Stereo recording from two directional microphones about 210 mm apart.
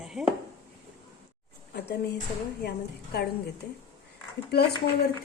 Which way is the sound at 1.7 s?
50° left (ahead or behind).